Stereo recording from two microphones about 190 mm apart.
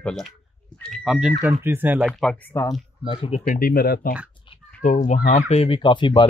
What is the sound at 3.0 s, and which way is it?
Speech, 30° left (ahead or behind).